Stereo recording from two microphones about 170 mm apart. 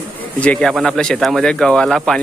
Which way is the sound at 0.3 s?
10° left (ahead or behind).